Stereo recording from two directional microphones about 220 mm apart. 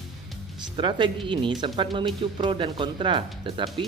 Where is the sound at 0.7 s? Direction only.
20° right (ahead or behind).